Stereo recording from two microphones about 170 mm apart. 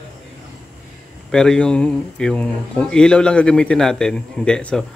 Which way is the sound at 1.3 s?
5° left (ahead or behind).